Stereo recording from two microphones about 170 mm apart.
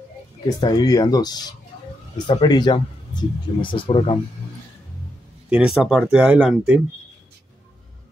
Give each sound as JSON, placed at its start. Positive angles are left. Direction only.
{"t": 0.6, "sound": "speech", "side_deg": 25}
{"t": 5.5, "sound": "speech", "side_deg": -5}